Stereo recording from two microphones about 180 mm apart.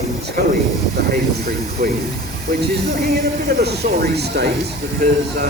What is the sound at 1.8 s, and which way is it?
Speech, 60° right (ahead or behind).